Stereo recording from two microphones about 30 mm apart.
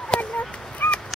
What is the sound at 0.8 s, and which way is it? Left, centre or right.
Dog, left.